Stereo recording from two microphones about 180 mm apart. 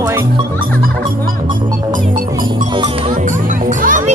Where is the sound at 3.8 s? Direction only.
50° right (ahead or behind).